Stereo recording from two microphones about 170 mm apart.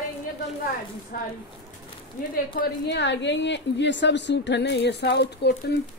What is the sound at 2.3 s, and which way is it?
A woman's voice, 75° left (ahead or behind).